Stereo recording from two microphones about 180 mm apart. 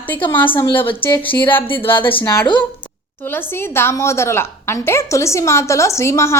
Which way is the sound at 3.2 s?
10° left (ahead or behind).